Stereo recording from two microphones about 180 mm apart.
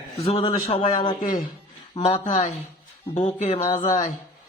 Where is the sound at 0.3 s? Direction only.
30° left (ahead or behind).